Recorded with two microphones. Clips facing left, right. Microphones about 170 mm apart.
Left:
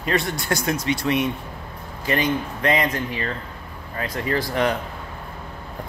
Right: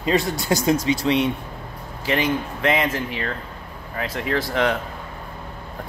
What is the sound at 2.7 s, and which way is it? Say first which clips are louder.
Speech: even; 5° right (ahead or behind).